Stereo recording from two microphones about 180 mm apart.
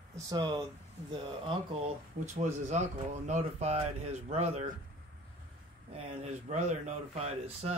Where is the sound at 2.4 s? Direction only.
40° right (ahead or behind).